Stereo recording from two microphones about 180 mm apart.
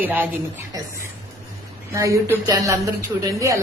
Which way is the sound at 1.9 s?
15° right (ahead or behind).